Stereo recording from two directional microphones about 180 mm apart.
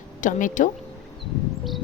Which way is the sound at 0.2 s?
45° left (ahead or behind).